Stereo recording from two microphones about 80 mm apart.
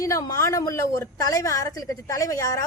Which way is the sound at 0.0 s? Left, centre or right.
Left.